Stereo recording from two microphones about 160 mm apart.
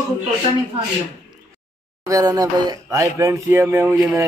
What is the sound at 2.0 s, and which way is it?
Speech, 20° right (ahead or behind).